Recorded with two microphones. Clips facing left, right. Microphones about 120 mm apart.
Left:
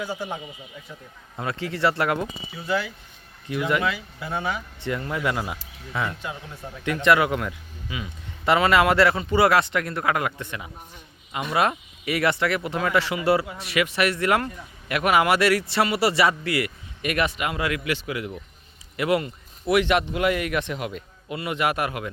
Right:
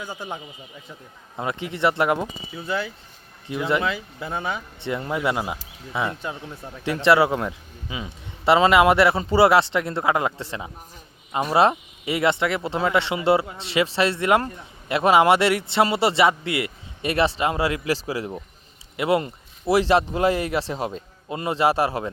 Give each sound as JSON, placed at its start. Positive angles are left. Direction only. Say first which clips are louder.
{"t": 1.4, "sound": "speech", "louder": "right 1 dB", "side_deg": -20}